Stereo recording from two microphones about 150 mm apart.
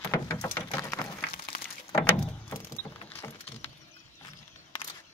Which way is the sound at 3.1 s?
15° left (ahead or behind).